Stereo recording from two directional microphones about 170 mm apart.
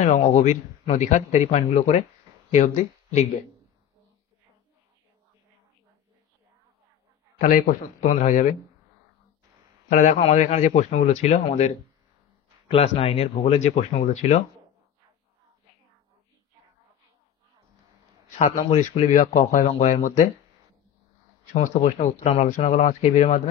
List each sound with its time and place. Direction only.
0.0 s a man's voice: 45° left (ahead or behind)
7.3 s a man's voice: 55° left (ahead or behind)
9.8 s a man's voice: 45° left (ahead or behind)
18.7 s a man's voice: 40° left (ahead or behind)
21.5 s a man's voice: 45° left (ahead or behind)